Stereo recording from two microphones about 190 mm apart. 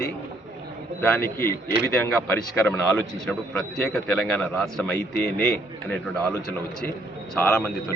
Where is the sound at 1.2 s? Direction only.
50° left (ahead or behind).